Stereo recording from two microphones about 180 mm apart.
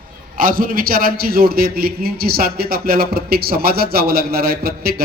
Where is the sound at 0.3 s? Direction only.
50° right (ahead or behind).